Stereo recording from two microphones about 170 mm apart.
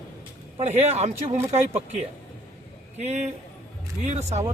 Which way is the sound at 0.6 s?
40° right (ahead or behind).